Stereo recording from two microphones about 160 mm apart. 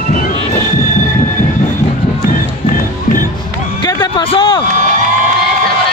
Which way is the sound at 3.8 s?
30° left (ahead or behind).